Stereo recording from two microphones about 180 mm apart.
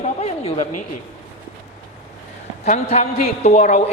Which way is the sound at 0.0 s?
35° left (ahead or behind).